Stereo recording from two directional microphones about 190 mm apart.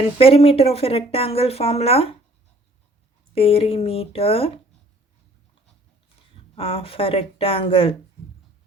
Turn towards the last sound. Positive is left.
turn(degrees=30)  # may be behind; listen again after turning